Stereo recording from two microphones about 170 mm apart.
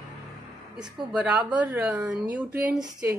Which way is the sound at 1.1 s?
5° right (ahead or behind).